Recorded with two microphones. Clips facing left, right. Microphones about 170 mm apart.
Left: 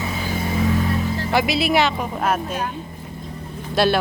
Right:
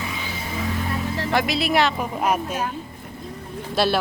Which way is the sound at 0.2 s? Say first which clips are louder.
Left 7 dB; 50° left (ahead or behind).